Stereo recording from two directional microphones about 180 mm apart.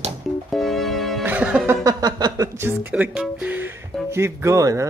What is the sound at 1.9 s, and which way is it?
Speech, 20° right (ahead or behind).